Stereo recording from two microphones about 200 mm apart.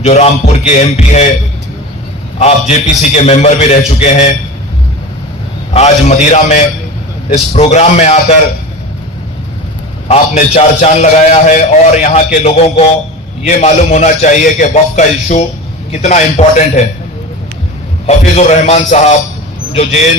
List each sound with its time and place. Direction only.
0.0 s a man's voice: 35° left (ahead or behind)
2.4 s a man's voice: 35° left (ahead or behind)
5.7 s a man's voice: 35° left (ahead or behind)
10.1 s a man's voice: 30° left (ahead or behind)
18.0 s a man's voice: 35° left (ahead or behind)